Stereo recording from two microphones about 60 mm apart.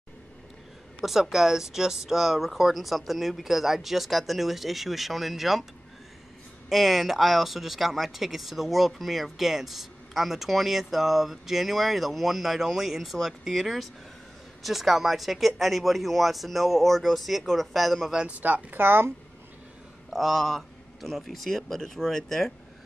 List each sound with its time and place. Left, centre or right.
1.0 s speech: centre
6.7 s speech: centre
18.4 s speech: right
20.1 s speech: centre